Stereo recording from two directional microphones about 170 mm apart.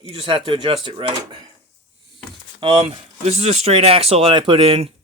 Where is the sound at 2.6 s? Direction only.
30° right (ahead or behind).